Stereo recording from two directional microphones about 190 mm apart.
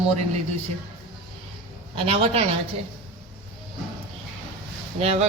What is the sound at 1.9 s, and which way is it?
Speech, 30° right (ahead or behind).